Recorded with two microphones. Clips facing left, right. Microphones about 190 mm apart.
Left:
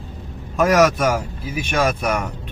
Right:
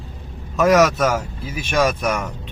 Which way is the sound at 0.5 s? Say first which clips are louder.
Right 1 dB; 10° left (ahead or behind).